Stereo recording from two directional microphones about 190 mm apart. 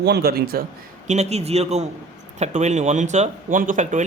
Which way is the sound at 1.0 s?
35° right (ahead or behind).